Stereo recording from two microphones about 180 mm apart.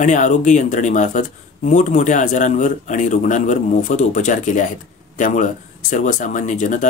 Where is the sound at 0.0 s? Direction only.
45° left (ahead or behind).